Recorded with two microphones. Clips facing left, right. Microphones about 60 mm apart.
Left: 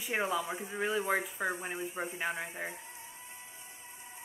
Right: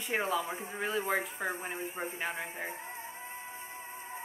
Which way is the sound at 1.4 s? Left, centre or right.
Right.